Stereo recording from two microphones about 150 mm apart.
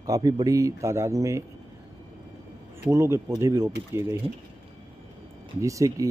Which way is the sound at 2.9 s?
20° right (ahead or behind).